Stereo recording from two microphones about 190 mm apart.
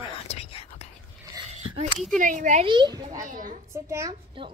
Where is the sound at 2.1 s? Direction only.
45° right (ahead or behind).